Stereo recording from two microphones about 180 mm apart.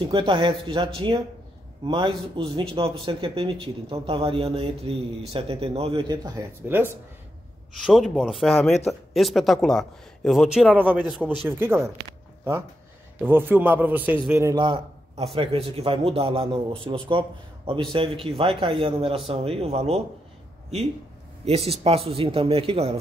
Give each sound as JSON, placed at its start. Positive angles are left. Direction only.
{"t": 0.0, "sound": "a man's voice", "side_deg": -30}
{"t": 7.8, "sound": "a man's voice", "side_deg": 0}
{"t": 13.2, "sound": "a man's voice", "side_deg": -10}
{"t": 17.9, "sound": "a man's voice", "side_deg": -30}
{"t": 21.5, "sound": "a man's voice", "side_deg": -35}